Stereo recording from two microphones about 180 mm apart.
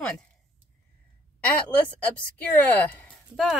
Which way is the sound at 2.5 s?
10° left (ahead or behind).